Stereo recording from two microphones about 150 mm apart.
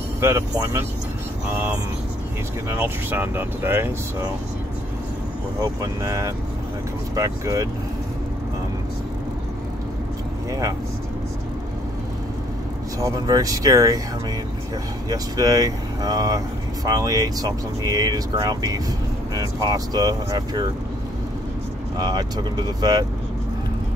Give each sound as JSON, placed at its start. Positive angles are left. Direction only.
{"t": 0.2, "sound": "speech", "side_deg": -15}
{"t": 2.7, "sound": "speech", "side_deg": -15}
{"t": 5.6, "sound": "speech", "side_deg": -20}
{"t": 13.0, "sound": "speech", "side_deg": -25}
{"t": 15.0, "sound": "speech", "side_deg": -25}
{"t": 21.9, "sound": "speech", "side_deg": -25}